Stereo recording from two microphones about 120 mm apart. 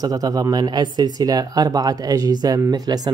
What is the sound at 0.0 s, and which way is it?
Speech, 30° right (ahead or behind).